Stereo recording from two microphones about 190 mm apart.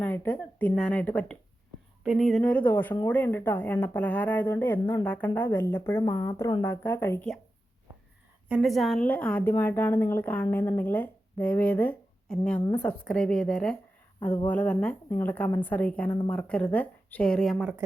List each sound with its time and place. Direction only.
0.0 s a woman's voice: 10° left (ahead or behind)
8.4 s a woman's voice: 5° right (ahead or behind)
16.0 s a woman's voice: 25° left (ahead or behind)
16.3 s a woman's voice: 5° left (ahead or behind)